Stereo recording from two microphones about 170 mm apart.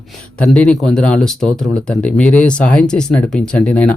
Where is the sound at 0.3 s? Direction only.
5° left (ahead or behind).